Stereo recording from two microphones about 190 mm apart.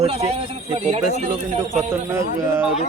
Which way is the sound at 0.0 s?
35° right (ahead or behind).